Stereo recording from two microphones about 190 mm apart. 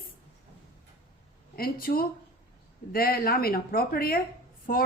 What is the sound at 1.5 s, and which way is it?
A woman's voice, 50° left (ahead or behind).